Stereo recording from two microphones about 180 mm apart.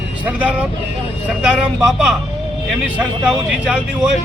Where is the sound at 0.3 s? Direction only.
10° right (ahead or behind).